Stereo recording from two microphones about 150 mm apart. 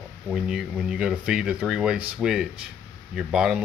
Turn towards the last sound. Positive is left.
turn(degrees=-5)  # may be behind; listen again after turning